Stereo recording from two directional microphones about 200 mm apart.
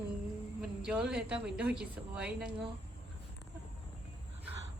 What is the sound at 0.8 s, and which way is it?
A woman's voice, 5° right (ahead or behind).